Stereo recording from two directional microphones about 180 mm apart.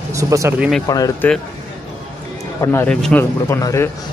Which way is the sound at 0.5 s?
5° right (ahead or behind).